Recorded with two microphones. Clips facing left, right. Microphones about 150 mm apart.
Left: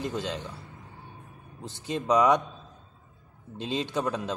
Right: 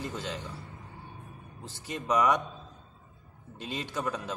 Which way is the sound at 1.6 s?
20° left (ahead or behind).